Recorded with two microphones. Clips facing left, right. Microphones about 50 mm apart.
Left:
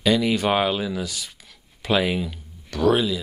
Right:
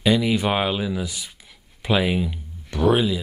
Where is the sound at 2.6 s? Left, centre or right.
Right.